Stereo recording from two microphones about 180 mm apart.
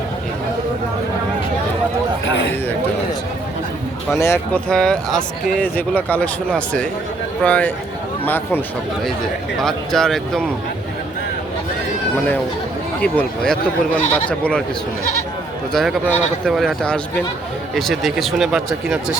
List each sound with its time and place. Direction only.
4.2 s speech: 15° left (ahead or behind)
4.7 s speech: 5° left (ahead or behind)
13.0 s speech: 5° left (ahead or behind)
15.7 s speech: centre (ahead or behind)